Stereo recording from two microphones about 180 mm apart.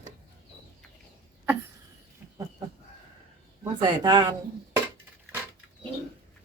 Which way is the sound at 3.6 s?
25° right (ahead or behind).